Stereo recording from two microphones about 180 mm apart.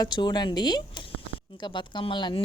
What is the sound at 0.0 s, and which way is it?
Speech, 25° left (ahead or behind).